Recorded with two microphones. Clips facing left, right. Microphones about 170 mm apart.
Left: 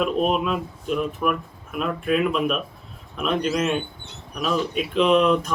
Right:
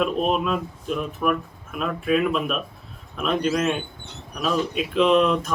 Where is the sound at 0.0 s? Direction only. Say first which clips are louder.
Left 1 dB; centre (ahead or behind).